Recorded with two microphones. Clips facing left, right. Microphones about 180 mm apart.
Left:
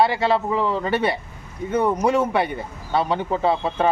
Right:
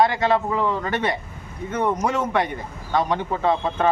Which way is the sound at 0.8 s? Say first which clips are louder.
Left 3 dB; 10° left (ahead or behind).